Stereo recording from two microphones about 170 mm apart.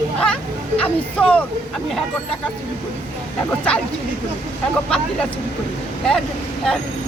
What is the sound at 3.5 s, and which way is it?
Speech, 5° left (ahead or behind).